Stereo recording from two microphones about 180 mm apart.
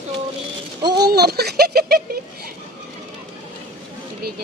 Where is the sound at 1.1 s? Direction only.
65° right (ahead or behind).